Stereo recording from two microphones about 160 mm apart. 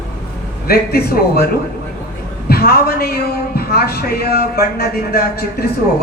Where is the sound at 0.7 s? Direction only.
75° left (ahead or behind).